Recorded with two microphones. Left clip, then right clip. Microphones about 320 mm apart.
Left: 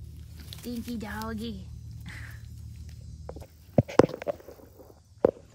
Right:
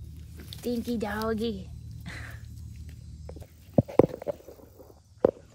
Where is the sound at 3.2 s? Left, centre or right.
Right.